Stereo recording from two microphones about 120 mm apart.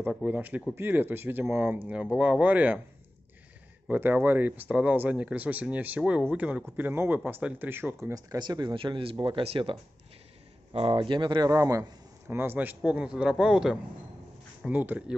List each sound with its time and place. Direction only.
0.1 s a man's voice: 5° right (ahead or behind)
3.9 s a man's voice: 15° right (ahead or behind)
8.1 s speech: 35° right (ahead or behind); by 11.0 s 55° right (ahead or behind)
11.0 s a man's voice: 40° right (ahead or behind); by 15.1 s 15° right (ahead or behind)